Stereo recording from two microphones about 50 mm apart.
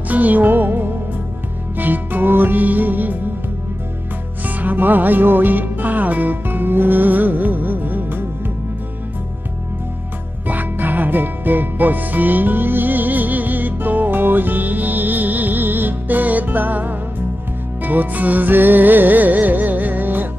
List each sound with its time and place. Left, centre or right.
0.1 s music: right
4.5 s music: right
10.5 s music: right